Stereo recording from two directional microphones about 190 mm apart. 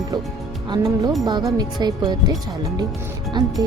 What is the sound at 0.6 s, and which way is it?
Speech, 20° right (ahead or behind).